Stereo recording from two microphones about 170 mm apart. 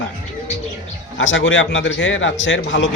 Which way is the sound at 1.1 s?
90° left.